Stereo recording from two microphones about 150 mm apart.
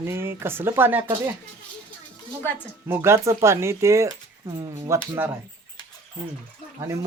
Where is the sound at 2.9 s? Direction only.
15° right (ahead or behind).